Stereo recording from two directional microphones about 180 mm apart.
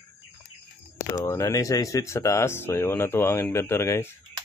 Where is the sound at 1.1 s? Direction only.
15° left (ahead or behind).